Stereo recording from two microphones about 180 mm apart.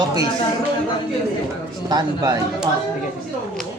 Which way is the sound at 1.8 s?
20° right (ahead or behind).